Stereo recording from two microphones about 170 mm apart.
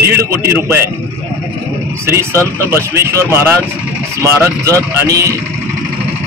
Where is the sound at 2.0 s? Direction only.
15° right (ahead or behind).